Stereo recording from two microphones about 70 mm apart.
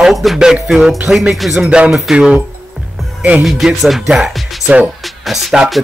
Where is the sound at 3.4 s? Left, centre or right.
Centre.